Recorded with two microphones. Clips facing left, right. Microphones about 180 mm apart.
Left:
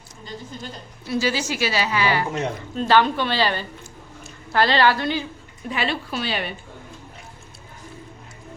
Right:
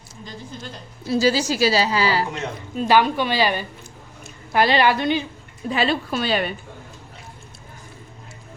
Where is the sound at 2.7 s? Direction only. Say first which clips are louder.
Right 1 dB; 10° right (ahead or behind).